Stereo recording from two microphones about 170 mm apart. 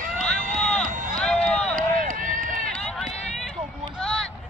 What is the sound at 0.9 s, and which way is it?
Run, 50° right (ahead or behind).